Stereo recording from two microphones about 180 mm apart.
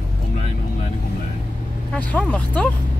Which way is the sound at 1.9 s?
10° left (ahead or behind).